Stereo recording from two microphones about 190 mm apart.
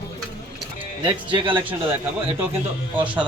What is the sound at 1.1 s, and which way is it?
Speech, 25° right (ahead or behind).